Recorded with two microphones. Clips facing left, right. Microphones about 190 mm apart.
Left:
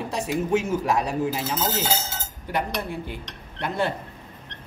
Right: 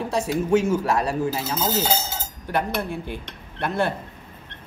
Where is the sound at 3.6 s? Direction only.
15° left (ahead or behind).